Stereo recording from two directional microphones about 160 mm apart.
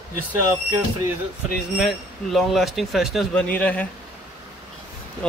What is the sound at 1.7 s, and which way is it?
Speech, centre (ahead or behind).